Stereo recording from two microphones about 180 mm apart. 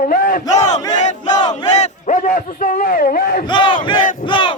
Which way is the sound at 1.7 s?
40° left (ahead or behind).